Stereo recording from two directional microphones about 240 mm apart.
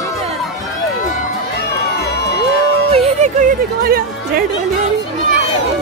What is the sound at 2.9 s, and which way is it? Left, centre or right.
Music, right.